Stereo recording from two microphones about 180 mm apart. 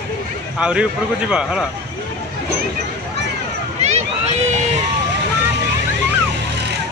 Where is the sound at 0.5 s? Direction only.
5° right (ahead or behind).